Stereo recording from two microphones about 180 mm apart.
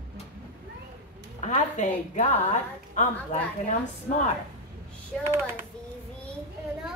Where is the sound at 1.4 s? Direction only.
40° left (ahead or behind).